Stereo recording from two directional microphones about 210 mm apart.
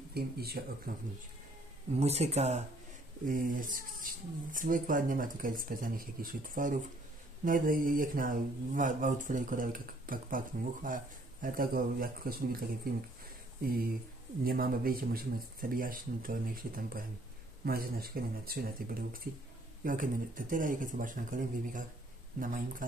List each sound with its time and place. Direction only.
0.1 s speech: 45° right (ahead or behind)
2.0 s speech: 30° right (ahead or behind)